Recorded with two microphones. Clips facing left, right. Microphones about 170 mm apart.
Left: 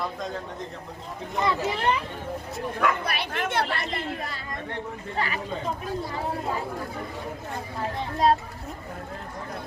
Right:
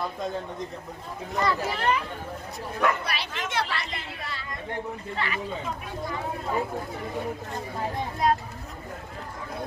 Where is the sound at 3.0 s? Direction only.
55° left (ahead or behind).